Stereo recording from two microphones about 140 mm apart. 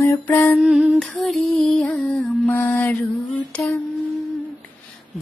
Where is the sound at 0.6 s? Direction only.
5° right (ahead or behind).